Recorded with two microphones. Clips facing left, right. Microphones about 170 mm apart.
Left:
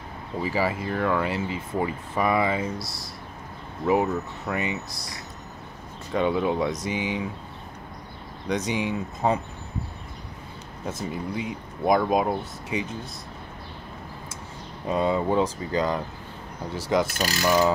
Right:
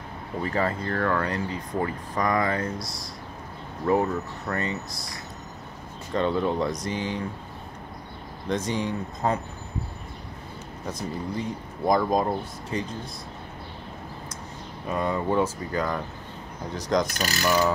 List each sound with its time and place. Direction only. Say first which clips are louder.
0.4 s speech: left 1 dB; 5° left (ahead or behind)
4.9 s speech: right 1 dB; centre (ahead or behind)
8.5 s speech: left 1 dB; centre (ahead or behind)
11.0 s speech: even; 5° left (ahead or behind)
14.9 s speech: left 3 dB; 15° left (ahead or behind)